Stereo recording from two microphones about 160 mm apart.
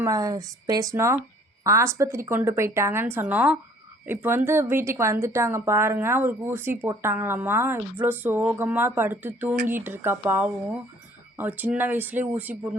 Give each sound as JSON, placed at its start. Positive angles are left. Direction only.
{"t": 0.0, "sound": "speech", "side_deg": -20}